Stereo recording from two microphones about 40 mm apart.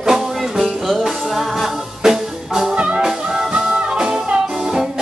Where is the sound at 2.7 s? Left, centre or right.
Right.